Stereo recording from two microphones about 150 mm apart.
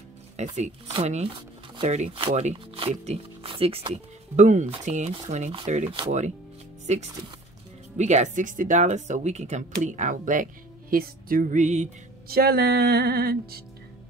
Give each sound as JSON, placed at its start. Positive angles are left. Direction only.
{"t": 0.4, "sound": "speech", "side_deg": -50}
{"t": 12.3, "sound": "music", "side_deg": -90}